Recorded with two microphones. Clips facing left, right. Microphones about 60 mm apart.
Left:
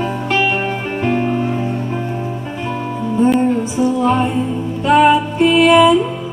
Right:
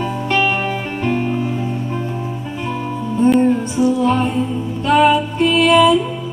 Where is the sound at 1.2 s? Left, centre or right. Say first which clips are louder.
Left 2 dB; left.